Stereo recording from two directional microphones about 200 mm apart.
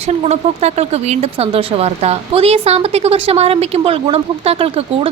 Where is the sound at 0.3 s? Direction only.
35° right (ahead or behind).